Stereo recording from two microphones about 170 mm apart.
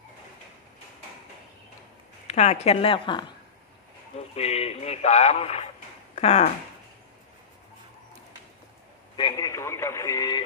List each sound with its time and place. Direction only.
2.2 s speech: 40° left (ahead or behind)
4.4 s speech: 40° left (ahead or behind)
9.1 s speech: 25° left (ahead or behind)